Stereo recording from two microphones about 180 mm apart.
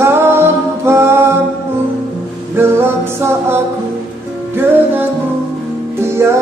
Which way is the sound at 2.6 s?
15° right (ahead or behind).